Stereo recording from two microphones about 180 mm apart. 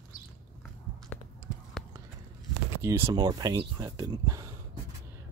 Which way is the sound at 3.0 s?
25° right (ahead or behind).